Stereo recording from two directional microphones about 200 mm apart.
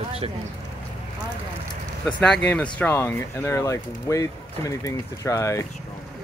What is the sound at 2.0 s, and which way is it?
Speech, 5° left (ahead or behind).